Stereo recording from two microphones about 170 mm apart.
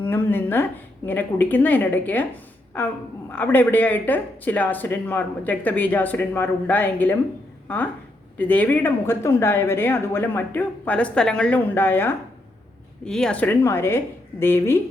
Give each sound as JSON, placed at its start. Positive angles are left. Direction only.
{"t": 0.0, "sound": "speech", "side_deg": 10}
{"t": 3.3, "sound": "speech", "side_deg": 10}